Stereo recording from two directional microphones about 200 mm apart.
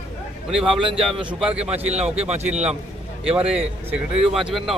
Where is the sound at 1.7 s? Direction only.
30° right (ahead or behind).